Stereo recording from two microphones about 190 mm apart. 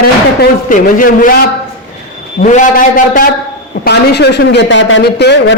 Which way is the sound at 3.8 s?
60° left (ahead or behind).